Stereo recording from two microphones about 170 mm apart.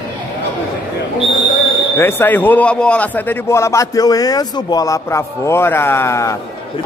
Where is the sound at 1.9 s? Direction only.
15° left (ahead or behind).